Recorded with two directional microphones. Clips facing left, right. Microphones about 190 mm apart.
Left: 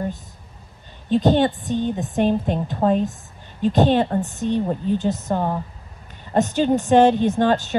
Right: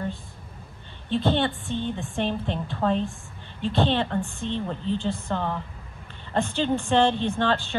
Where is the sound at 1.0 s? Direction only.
40° left (ahead or behind).